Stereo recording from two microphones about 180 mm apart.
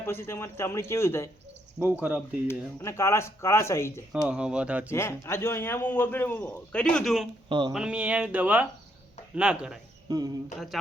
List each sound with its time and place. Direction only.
0.0 s a man's voice: 15° left (ahead or behind)
1.8 s speech: 10° right (ahead or behind)
2.5 s a man's voice: 15° left (ahead or behind)
4.3 s speech: 5° right (ahead or behind)
4.9 s a man's voice: 15° left (ahead or behind); by 9.7 s 5° right (ahead or behind)
10.1 s a sound: 20° right (ahead or behind)